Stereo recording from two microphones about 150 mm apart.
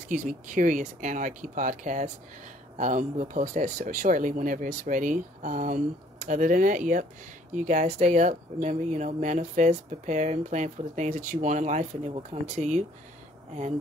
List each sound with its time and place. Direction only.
0.1 s speech: 60° right (ahead or behind)